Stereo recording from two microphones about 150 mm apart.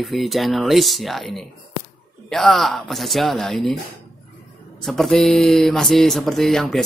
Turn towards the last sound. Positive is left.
turn(degrees=0)  # may be behind; listen again after turning